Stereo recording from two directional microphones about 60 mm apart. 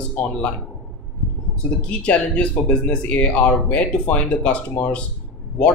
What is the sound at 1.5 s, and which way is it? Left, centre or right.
Speech, centre.